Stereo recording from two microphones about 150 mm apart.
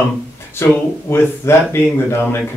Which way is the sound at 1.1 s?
15° left (ahead or behind).